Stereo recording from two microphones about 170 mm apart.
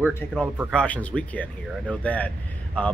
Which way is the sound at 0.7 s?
5° left (ahead or behind).